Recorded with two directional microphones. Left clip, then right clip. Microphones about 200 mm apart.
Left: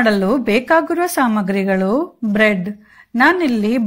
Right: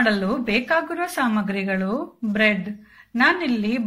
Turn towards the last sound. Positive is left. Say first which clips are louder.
# left 6 dB
turn(degrees=45)  # may be behind; listen again after turning